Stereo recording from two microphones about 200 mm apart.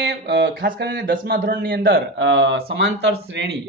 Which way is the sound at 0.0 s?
55° right (ahead or behind).